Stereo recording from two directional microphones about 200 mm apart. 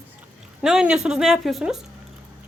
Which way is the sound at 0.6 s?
5° right (ahead or behind).